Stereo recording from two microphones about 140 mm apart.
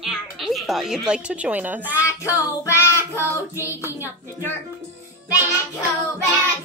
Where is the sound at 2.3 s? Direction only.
20° left (ahead or behind).